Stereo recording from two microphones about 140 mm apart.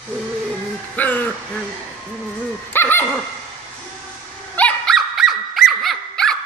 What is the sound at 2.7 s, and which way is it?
Speech, 15° left (ahead or behind).